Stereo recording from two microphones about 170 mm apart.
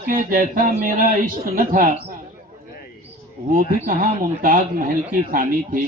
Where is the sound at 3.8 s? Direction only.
55° right (ahead or behind).